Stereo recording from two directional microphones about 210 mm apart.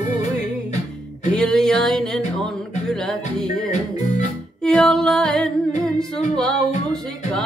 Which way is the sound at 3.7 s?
35° left (ahead or behind).